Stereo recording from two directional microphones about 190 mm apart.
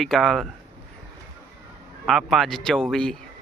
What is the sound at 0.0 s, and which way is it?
Speech, centre (ahead or behind).